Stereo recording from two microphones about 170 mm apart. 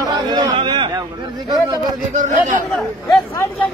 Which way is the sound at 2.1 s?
50° right (ahead or behind).